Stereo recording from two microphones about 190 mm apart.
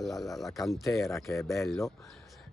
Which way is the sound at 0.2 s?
Centre (ahead or behind).